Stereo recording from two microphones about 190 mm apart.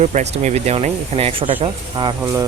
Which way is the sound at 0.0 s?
35° right (ahead or behind).